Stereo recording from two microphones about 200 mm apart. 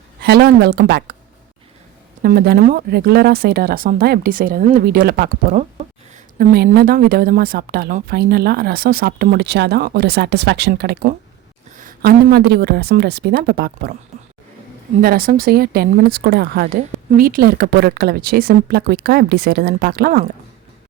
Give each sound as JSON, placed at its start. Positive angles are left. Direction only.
{"t": 0.2, "sound": "a woman's voice", "side_deg": -55}
{"t": 2.2, "sound": "a woman's voice", "side_deg": -50}
{"t": 15.0, "sound": "a woman's voice", "side_deg": -45}